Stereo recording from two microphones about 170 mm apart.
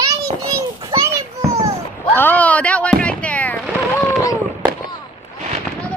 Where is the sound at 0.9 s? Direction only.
20° right (ahead or behind).